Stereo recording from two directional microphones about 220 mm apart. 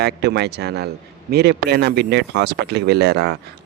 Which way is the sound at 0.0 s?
50° right (ahead or behind).